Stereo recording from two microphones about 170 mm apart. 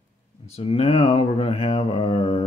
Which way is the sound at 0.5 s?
35° left (ahead or behind).